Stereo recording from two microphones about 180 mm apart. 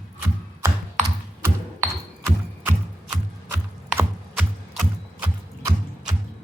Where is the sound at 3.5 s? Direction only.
10° right (ahead or behind).